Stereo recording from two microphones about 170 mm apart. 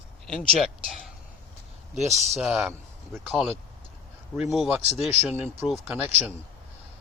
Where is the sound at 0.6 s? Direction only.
Centre (ahead or behind).